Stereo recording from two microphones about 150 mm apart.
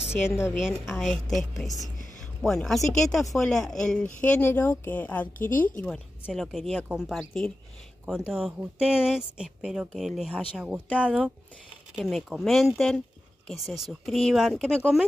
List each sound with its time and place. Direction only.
0.1 s a woman's voice: 15° left (ahead or behind)
0.6 s speech: centre (ahead or behind)